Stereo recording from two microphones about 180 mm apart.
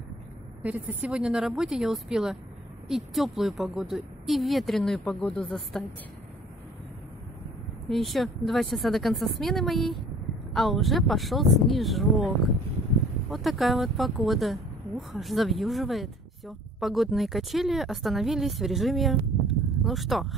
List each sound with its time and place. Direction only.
0.6 s speech: 10° right (ahead or behind)
7.9 s speech: centre (ahead or behind)
13.3 s speech: centre (ahead or behind)